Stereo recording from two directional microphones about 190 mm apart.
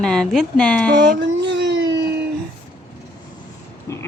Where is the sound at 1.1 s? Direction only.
65° right (ahead or behind).